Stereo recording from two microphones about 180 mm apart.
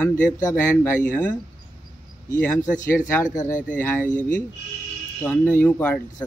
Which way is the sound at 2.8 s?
15° left (ahead or behind).